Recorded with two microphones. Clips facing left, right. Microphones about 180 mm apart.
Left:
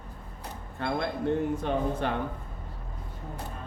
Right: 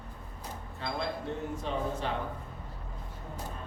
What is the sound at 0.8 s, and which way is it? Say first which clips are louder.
A man's voice: left 5 dB; 60° left (ahead or behind).